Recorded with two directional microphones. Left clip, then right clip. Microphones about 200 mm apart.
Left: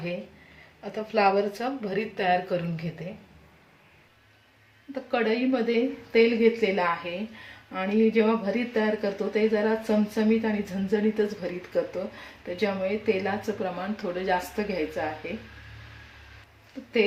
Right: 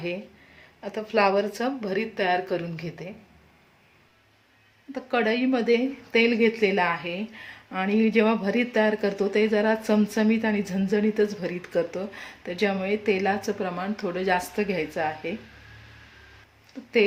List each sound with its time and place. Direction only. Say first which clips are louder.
0.8 s speech: right 1 dB; 40° right (ahead or behind)
4.9 s a woman's voice: right 1 dB; 40° right (ahead or behind)